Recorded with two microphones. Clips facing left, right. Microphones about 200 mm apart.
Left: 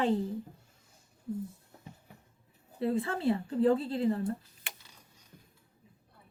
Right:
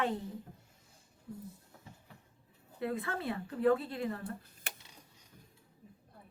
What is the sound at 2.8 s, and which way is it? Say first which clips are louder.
A woman's voice: left 6 dB; 30° left (ahead or behind).